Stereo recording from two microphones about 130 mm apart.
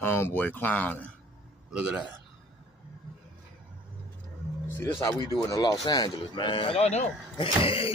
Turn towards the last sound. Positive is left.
turn(degrees=45)  # may be behind; listen again after turning